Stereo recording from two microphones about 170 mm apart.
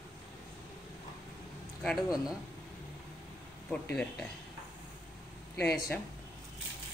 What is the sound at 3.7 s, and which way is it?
Speech, 5° left (ahead or behind).